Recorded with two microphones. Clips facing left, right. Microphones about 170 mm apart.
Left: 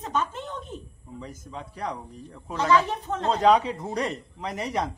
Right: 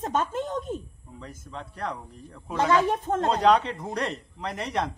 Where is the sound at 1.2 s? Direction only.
5° left (ahead or behind).